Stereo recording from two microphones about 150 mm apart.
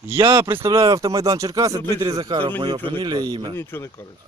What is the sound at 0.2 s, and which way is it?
A man's voice, 30° right (ahead or behind).